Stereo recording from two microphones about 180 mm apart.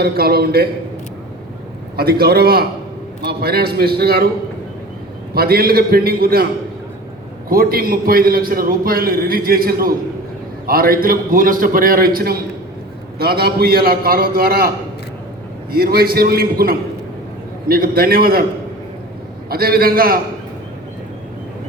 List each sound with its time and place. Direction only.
0.0 s a man's voice: 60° right (ahead or behind)
2.0 s a man's voice: 60° right (ahead or behind)
5.3 s a man's voice: 55° right (ahead or behind)
7.5 s a man's voice: 55° right (ahead or behind)
15.7 s a man's voice: 60° right (ahead or behind)
19.5 s a man's voice: 55° right (ahead or behind)